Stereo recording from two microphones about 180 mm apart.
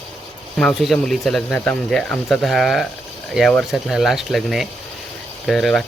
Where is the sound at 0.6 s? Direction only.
Centre (ahead or behind).